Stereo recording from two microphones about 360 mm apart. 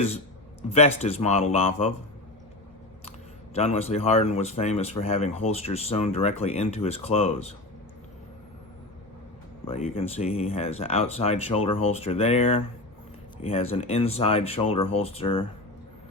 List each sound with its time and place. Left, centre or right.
0.7 s speech: centre
3.5 s speech: centre
9.6 s speech: centre